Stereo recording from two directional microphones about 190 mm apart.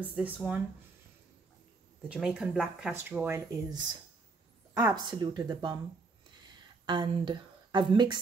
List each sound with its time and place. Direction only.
0.0 s speech: 10° right (ahead or behind)
2.0 s speech: 5° right (ahead or behind); by 5.8 s 20° right (ahead or behind)
6.9 s speech: 25° right (ahead or behind)